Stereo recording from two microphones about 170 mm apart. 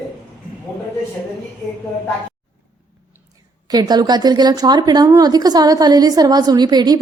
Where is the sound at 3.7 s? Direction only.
25° right (ahead or behind).